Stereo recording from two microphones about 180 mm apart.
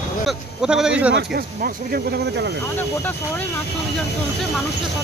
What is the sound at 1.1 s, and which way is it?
Speech, 60° right (ahead or behind).